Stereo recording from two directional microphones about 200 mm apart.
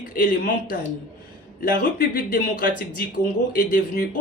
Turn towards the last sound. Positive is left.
turn(degrees=45)  # may be behind; listen again after turning